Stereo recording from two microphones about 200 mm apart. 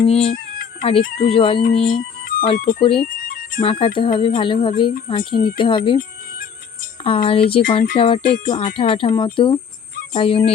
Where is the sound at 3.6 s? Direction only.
25° left (ahead or behind).